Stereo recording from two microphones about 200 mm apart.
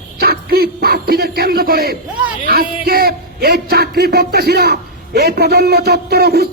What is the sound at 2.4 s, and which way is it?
A man's voice, 50° right (ahead or behind).